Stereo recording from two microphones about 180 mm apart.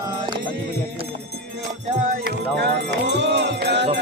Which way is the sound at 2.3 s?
70° right (ahead or behind).